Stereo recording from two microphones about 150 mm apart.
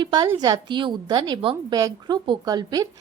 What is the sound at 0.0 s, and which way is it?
A woman's voice, 30° right (ahead or behind).